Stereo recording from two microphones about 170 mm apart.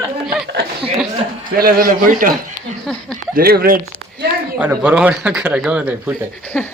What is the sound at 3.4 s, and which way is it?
Speech, 60° right (ahead or behind).